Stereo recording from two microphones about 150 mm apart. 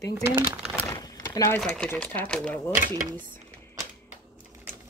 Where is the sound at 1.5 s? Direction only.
5° left (ahead or behind).